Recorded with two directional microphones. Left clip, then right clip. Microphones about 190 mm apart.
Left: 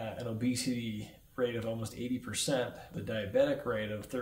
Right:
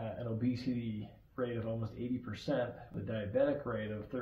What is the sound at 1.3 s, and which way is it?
Speech, 25° left (ahead or behind).